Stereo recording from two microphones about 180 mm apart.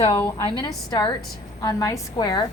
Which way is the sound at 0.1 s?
15° left (ahead or behind).